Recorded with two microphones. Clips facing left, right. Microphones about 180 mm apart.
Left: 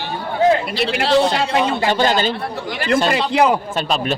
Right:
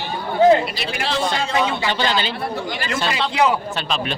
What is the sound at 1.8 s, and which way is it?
A man's voice, 45° left (ahead or behind).